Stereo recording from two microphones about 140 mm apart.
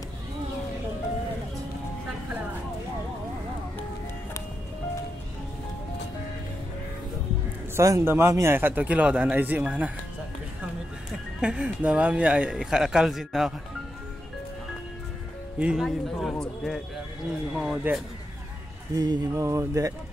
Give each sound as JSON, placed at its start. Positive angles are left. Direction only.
{"t": 7.7, "sound": "speech", "side_deg": -20}
{"t": 11.4, "sound": "speech", "side_deg": -5}
{"t": 15.6, "sound": "a man's voice", "side_deg": -5}
{"t": 18.9, "sound": "music", "side_deg": -25}